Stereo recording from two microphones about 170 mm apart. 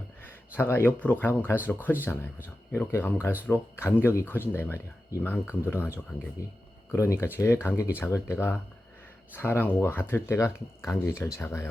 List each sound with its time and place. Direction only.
0.2 s speech: 15° left (ahead or behind)
6.9 s speech: 15° left (ahead or behind)